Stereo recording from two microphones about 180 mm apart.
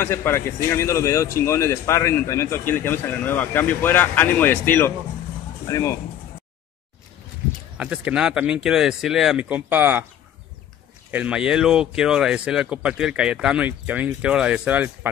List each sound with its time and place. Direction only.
0.0 s speech: 15° left (ahead or behind)
7.7 s speech: 5° right (ahead or behind)
11.1 s speech: 5° right (ahead or behind)